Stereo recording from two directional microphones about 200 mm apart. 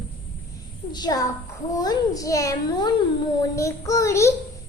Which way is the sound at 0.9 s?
20° left (ahead or behind).